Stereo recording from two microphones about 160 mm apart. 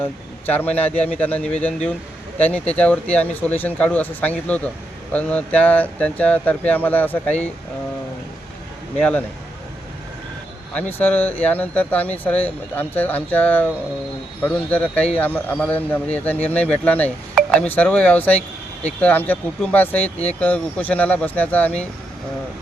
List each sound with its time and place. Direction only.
0.0 s speech: 10° left (ahead or behind)
9.0 s speech: 10° left (ahead or behind)
10.8 s speech: 10° left (ahead or behind)